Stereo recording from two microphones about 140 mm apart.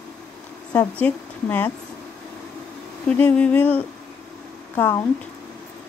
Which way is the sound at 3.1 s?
10° left (ahead or behind).